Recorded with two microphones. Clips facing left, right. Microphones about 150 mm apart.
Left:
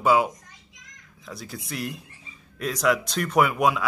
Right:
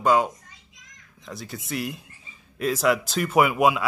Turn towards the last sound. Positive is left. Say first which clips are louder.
# right 2 dB
turn(degrees=-5)  # may be behind; listen again after turning